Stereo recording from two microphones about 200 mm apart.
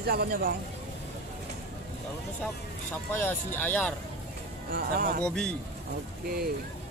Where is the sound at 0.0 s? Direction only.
50° right (ahead or behind).